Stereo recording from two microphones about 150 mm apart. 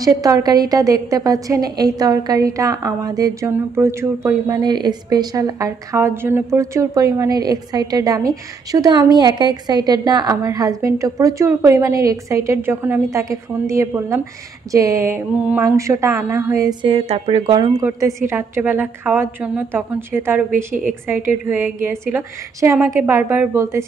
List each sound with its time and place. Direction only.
0.0 s a woman's voice: 25° right (ahead or behind)
16.8 s a woman's voice: 40° right (ahead or behind)
17.8 s a woman's voice: 15° right (ahead or behind)